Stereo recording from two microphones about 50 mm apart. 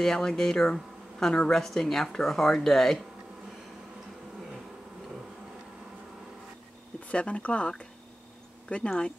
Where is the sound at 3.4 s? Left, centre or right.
Centre.